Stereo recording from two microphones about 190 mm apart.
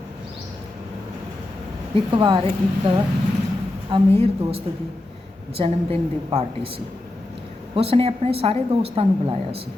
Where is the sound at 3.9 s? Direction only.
25° right (ahead or behind).